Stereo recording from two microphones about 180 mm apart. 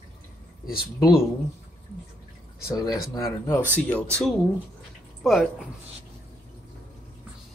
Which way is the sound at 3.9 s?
5° left (ahead or behind).